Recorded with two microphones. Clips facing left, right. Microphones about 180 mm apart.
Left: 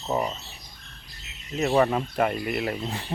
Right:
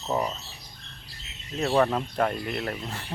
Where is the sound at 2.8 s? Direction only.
15° left (ahead or behind).